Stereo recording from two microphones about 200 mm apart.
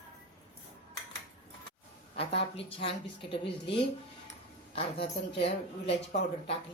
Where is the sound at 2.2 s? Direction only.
30° left (ahead or behind).